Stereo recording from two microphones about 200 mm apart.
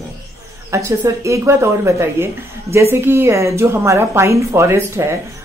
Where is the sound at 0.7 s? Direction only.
15° right (ahead or behind).